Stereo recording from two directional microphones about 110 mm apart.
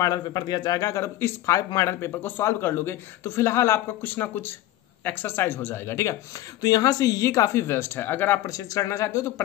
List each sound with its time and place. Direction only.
0.0 s speech: 35° left (ahead or behind); by 8.4 s 20° left (ahead or behind)
8.5 s speech: 30° left (ahead or behind)